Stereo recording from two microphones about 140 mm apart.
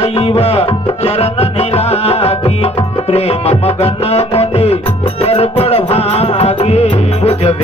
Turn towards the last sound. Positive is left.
turn(degrees=45)  # may be behind; listen again after turning